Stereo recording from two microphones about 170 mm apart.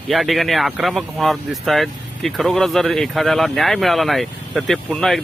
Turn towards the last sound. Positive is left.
turn(degrees=0)  # may be behind; listen again after turning